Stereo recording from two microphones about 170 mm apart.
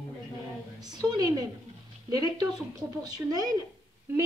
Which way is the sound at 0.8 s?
25° right (ahead or behind).